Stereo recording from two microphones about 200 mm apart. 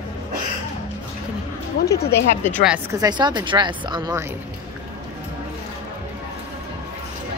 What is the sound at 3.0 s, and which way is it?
Speech, 20° right (ahead or behind).